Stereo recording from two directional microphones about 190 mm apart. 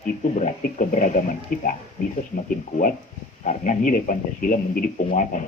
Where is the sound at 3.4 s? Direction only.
40° left (ahead or behind).